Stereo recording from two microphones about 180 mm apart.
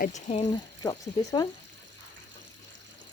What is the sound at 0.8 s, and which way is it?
Speech, 20° left (ahead or behind).